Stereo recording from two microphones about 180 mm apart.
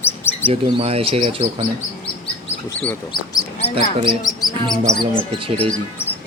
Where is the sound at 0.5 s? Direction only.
35° right (ahead or behind).